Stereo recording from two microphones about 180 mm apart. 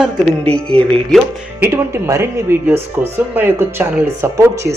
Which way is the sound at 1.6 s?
15° right (ahead or behind).